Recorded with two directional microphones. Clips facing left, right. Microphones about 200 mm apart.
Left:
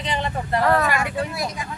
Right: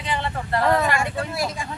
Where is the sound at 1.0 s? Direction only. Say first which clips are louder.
Even; 30° right (ahead or behind).